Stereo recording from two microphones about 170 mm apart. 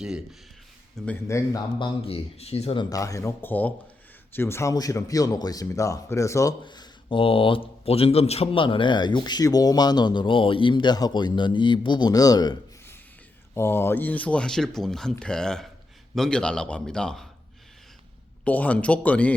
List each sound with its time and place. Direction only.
1.0 s a man's voice: 5° left (ahead or behind)
1.3 s speech: 15° left (ahead or behind)
1.8 s speech: 35° left (ahead or behind)
2.9 s a man's voice: 20° left (ahead or behind); by 17.2 s 5° left (ahead or behind)
18.4 s speech: 10° left (ahead or behind)